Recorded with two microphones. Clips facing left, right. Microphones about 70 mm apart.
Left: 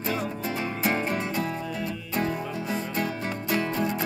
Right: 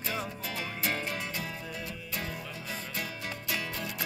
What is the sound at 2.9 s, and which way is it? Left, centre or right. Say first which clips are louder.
Music: left 9 dB; left.